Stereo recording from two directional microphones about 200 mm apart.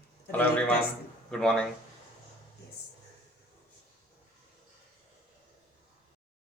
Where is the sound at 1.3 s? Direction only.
5° left (ahead or behind).